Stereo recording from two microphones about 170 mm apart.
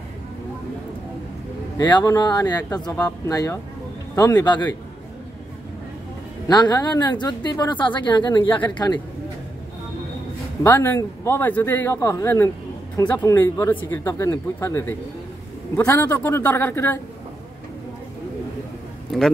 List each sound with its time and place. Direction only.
1.8 s speech: 25° left (ahead or behind)
6.5 s speech: 25° left (ahead or behind)
10.6 s speech: 15° left (ahead or behind)